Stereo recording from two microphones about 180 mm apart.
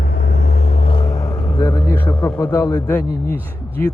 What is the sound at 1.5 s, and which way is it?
Speech, 20° left (ahead or behind).